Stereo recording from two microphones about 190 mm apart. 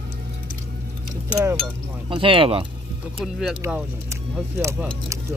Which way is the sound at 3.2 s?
5° right (ahead or behind).